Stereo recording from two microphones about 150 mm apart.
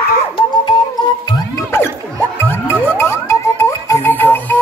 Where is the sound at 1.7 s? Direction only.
15° left (ahead or behind).